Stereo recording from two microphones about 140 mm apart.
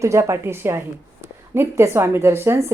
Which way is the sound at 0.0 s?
20° right (ahead or behind).